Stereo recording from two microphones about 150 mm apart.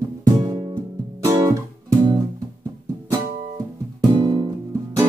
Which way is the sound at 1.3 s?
20° right (ahead or behind).